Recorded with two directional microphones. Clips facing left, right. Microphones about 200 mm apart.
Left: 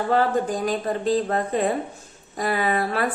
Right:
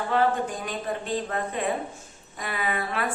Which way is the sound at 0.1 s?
40° left (ahead or behind).